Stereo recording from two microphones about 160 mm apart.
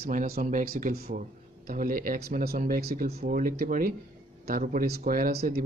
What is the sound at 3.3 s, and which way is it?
Speech, 60° right (ahead or behind).